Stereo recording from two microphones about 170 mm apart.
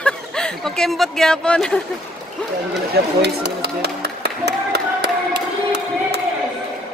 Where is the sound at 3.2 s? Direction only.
75° right (ahead or behind).